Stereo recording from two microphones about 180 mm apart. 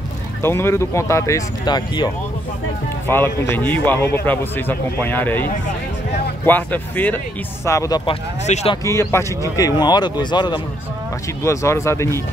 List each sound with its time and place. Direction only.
0.4 s a man's voice: 15° left (ahead or behind)
3.1 s a man's voice: 10° left (ahead or behind)
8.5 s speech: 40° left (ahead or behind)
8.8 s a man's voice: 15° left (ahead or behind)